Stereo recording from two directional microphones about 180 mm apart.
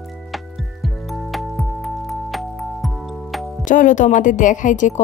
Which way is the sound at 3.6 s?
45° left (ahead or behind).